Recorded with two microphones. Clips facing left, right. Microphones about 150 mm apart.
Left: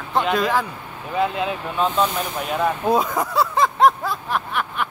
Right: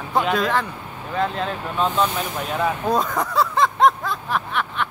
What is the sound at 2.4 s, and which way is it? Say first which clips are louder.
Vehicle: left 2 dB; 5° left (ahead or behind).